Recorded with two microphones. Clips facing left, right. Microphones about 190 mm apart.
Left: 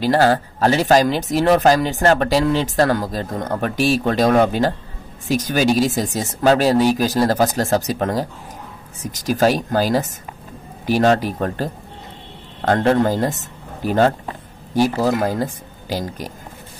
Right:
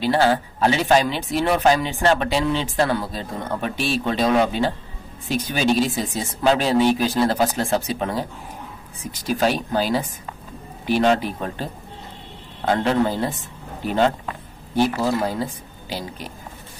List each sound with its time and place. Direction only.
0.0 s speech: 40° left (ahead or behind)
5.6 s speech: 10° left (ahead or behind)
5.9 s speech: 45° left (ahead or behind)